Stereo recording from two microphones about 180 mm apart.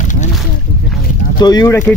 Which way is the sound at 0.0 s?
40° left (ahead or behind).